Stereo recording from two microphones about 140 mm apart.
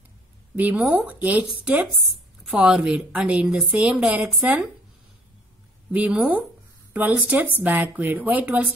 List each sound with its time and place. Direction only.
0.6 s a woman's voice: 10° right (ahead or behind)
5.9 s a woman's voice: 10° right (ahead or behind)